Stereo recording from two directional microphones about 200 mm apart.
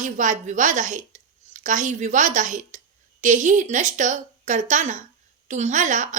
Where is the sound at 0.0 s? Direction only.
40° right (ahead or behind).